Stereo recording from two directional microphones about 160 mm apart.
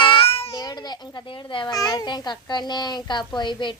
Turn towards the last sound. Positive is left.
turn(degrees=30)  # may be behind; listen again after turning